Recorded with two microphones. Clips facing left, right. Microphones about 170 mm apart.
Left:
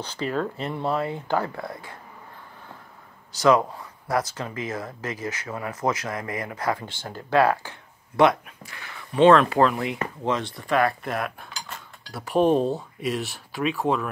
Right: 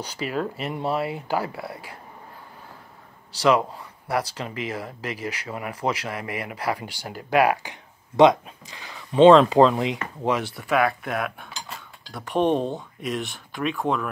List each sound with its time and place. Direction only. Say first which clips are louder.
0.0 s speech: left 1 dB; 10° right (ahead or behind)
4.4 s speech: even; 15° right (ahead or behind)
10.2 s cutlery: right 3 dB; 10° right (ahead or behind)